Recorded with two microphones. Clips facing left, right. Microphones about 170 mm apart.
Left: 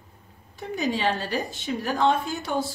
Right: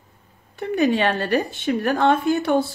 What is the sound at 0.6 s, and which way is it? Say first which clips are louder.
Speech: right 7 dB; 60° right (ahead or behind).